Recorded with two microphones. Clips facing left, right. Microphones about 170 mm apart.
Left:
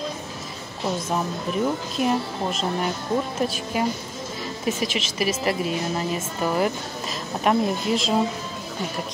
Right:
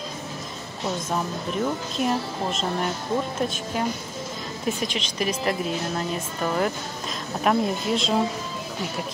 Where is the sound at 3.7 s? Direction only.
10° left (ahead or behind).